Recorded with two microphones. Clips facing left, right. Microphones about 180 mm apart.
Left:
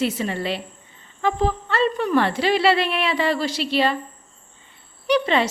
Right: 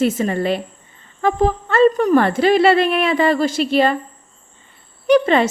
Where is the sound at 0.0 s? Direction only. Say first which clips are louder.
Right 6 dB; 50° right (ahead or behind).